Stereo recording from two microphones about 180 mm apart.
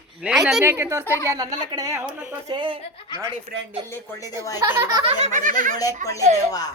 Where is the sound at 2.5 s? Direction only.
25° right (ahead or behind).